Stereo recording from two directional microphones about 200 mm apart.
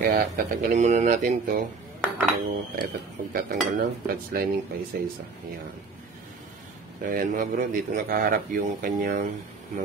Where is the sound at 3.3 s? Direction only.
50° right (ahead or behind).